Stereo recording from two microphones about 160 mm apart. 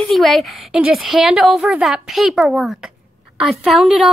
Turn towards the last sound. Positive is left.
turn(degrees=-5)  # may be behind; listen again after turning